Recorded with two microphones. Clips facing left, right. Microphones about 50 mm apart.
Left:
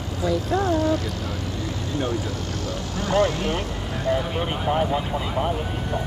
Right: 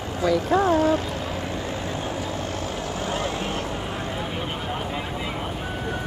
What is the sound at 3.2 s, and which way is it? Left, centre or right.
Vehicle, right.